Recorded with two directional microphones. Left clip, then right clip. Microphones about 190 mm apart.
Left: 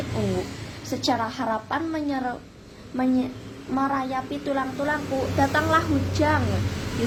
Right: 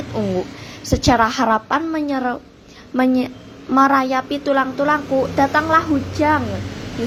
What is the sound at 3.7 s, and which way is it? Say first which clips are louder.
A woman's voice: right 11 dB; 30° right (ahead or behind).